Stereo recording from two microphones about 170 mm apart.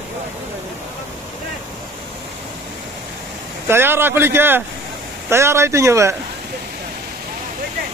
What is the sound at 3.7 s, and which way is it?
Speech, 15° right (ahead or behind).